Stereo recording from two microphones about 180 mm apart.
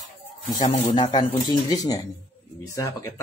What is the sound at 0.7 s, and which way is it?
Chicken, 30° left (ahead or behind).